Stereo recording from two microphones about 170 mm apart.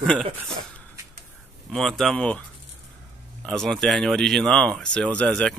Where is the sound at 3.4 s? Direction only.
5° left (ahead or behind).